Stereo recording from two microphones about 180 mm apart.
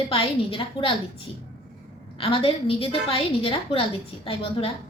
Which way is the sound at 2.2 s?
30° left (ahead or behind).